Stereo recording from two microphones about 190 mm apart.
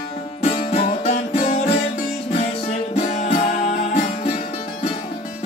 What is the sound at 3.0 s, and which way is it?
Music, 40° left (ahead or behind).